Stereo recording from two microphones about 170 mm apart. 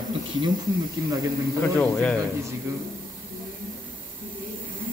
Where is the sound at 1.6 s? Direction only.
5° left (ahead or behind).